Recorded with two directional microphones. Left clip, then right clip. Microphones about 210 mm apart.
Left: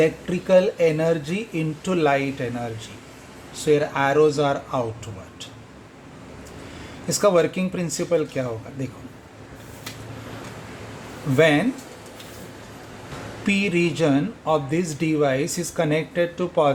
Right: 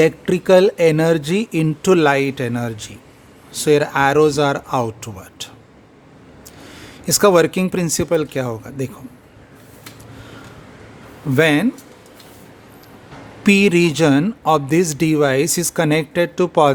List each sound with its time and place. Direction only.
0.0 s a man's voice: 55° right (ahead or behind)
7.1 s a man's voice: 55° right (ahead or behind)
11.3 s speech: 55° right (ahead or behind)
13.4 s a man's voice: 55° right (ahead or behind)